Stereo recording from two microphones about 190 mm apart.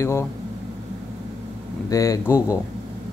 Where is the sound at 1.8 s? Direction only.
15° left (ahead or behind).